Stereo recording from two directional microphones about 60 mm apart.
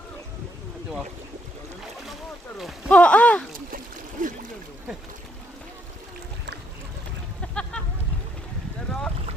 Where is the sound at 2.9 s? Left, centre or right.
Centre.